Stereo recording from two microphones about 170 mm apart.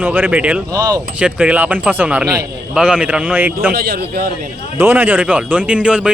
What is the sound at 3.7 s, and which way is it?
Speech, 65° right (ahead or behind).